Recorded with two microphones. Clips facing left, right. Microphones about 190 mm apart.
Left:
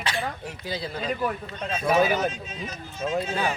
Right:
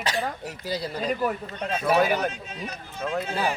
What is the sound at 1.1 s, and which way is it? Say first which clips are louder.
Speech: right 2 dB; 10° right (ahead or behind).